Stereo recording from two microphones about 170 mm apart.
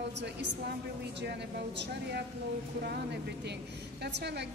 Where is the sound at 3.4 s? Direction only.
80° right.